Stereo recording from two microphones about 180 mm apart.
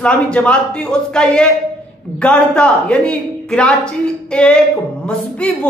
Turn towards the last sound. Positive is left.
turn(degrees=5)  # may be behind; listen again after turning